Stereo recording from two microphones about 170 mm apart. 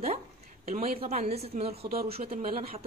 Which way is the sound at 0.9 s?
40° right (ahead or behind).